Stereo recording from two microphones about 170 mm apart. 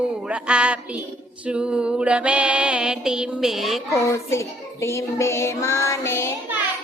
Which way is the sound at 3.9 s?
15° left (ahead or behind).